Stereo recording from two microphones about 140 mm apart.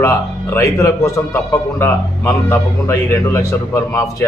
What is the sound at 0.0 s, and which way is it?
A man's voice, 20° left (ahead or behind).